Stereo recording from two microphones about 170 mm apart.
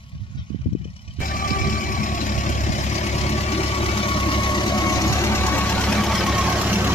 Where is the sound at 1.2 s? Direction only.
55° left (ahead or behind).